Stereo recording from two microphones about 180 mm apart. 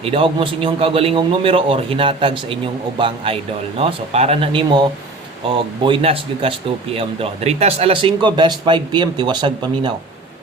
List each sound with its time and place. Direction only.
0.0 s a man's voice: 30° right (ahead or behind)
5.8 s speech: 30° right (ahead or behind)